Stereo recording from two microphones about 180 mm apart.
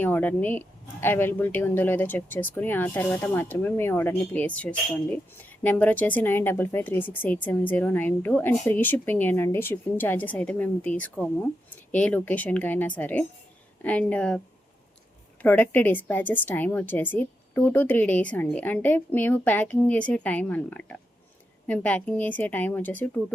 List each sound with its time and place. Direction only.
0.0 s speech: 10° left (ahead or behind)